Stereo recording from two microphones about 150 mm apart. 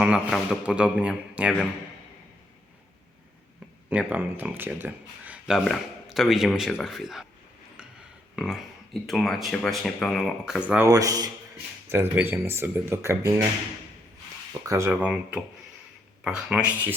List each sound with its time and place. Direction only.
0.0 s a man's voice: 5° right (ahead or behind)
3.8 s speech: 10° right (ahead or behind)
7.8 s a sound: 5° right (ahead or behind)
8.4 s speech: centre (ahead or behind)
10.8 s a man's voice: 25° right (ahead or behind)
14.7 s a man's voice: 15° right (ahead or behind)